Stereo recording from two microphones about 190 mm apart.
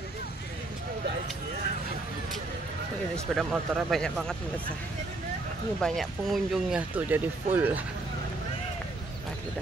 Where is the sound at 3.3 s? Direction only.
Centre (ahead or behind).